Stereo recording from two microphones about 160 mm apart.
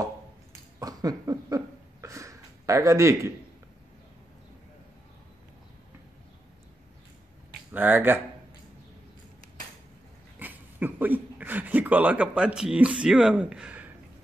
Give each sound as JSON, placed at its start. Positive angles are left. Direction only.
{"t": 0.7, "sound": "a sound", "side_deg": -20}
{"t": 7.7, "sound": "speech", "side_deg": -10}
{"t": 10.4, "sound": "speech", "side_deg": -10}